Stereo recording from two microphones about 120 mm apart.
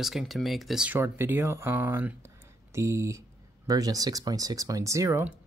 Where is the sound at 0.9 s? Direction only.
15° right (ahead or behind).